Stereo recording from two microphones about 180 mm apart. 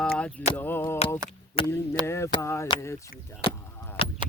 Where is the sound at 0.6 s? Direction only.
10° left (ahead or behind).